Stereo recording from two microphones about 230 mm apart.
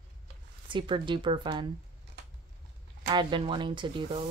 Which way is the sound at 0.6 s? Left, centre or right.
Right.